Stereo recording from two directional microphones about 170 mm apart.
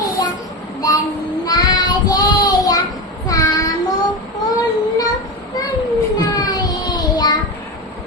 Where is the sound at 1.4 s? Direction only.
25° left (ahead or behind).